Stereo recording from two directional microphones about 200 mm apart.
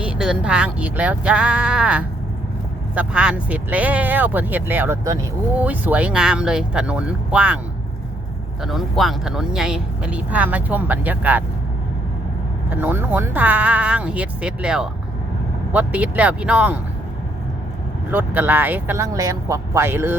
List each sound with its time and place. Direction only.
0.0 s speech: 5° right (ahead or behind)
8.6 s speech: centre (ahead or behind)
12.7 s speech: 10° right (ahead or behind)
18.1 s speech: 10° right (ahead or behind)